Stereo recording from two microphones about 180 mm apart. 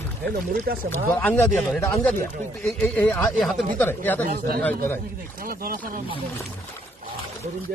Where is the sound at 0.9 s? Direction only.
5° left (ahead or behind).